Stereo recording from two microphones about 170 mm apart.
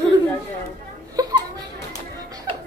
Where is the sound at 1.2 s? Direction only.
20° right (ahead or behind).